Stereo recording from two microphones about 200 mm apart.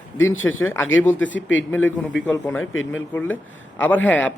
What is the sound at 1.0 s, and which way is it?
A man's voice, 10° left (ahead or behind).